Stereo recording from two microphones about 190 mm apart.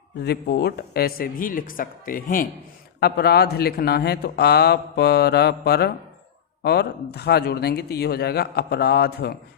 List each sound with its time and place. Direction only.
0.2 s speech: 55° left (ahead or behind)
3.0 s a man's voice: 55° left (ahead or behind)